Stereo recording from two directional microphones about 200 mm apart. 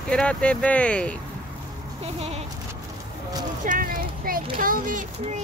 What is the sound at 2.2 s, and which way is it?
Bleat, 30° right (ahead or behind).